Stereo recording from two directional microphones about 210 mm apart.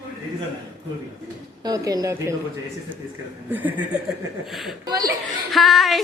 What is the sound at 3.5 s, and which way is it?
A woman's voice, 10° right (ahead or behind).